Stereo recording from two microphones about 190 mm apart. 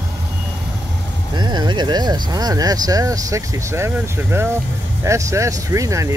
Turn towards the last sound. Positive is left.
turn(degrees=-15)  # may be behind; listen again after turning